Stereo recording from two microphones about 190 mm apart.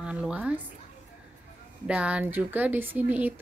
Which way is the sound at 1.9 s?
5° right (ahead or behind).